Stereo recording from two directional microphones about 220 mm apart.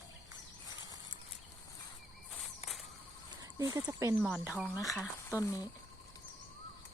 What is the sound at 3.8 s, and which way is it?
Speech, 10° right (ahead or behind).